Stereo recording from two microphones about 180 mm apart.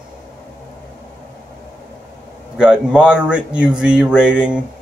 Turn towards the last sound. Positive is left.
turn(degrees=-5)  # may be behind; listen again after turning